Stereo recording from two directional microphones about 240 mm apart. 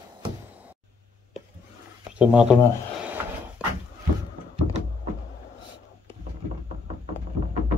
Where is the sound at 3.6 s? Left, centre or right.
Centre.